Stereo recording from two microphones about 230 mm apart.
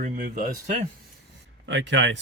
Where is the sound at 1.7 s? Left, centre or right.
Right.